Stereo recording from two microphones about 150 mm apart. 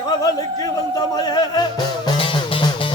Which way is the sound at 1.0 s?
25° left (ahead or behind).